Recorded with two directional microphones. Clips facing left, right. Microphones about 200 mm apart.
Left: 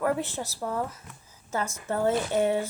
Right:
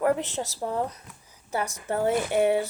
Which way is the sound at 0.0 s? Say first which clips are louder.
Right 3 dB; 20° right (ahead or behind).